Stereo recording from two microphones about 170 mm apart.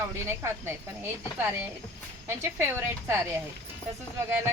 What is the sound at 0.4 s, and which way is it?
Speech, 15° right (ahead or behind).